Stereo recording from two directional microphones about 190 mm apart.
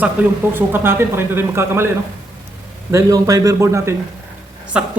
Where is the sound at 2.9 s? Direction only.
20° right (ahead or behind).